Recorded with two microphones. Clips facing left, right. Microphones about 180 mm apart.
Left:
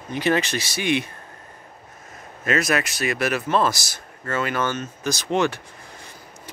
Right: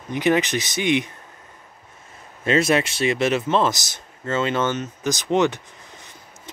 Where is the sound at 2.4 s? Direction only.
30° right (ahead or behind).